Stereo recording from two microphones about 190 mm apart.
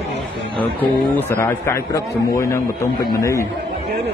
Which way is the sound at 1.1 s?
10° left (ahead or behind).